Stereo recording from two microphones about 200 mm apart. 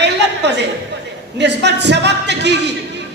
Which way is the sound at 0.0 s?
60° right (ahead or behind).